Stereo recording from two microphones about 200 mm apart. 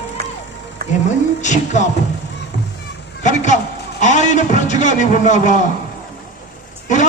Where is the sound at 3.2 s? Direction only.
35° left (ahead or behind).